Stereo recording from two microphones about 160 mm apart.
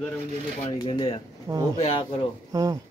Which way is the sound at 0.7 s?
30° left (ahead or behind).